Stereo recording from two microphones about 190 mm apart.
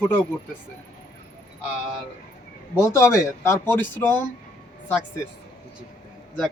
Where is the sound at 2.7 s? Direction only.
15° left (ahead or behind).